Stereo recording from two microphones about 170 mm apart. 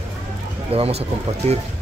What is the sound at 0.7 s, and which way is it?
Speech, 35° right (ahead or behind).